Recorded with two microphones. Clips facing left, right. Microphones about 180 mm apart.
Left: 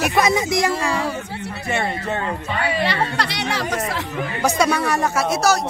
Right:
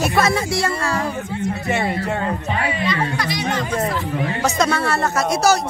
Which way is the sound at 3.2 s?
70° left (ahead or behind).